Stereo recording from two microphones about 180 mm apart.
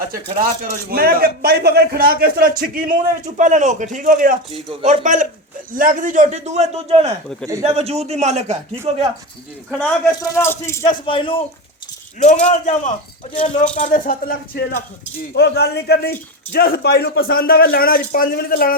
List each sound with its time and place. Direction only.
0.1 s a man's voice: 50° right (ahead or behind)
4.5 s a man's voice: 35° right (ahead or behind)
10.1 s speech: 15° left (ahead or behind)
11.0 s a man's voice: 30° left (ahead or behind)
12.2 s speech: 40° left (ahead or behind)
15.3 s speech: 65° left (ahead or behind)